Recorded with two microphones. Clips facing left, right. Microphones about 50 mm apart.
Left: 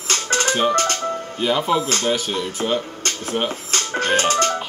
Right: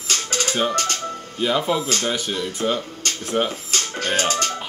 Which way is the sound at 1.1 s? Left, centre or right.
Left.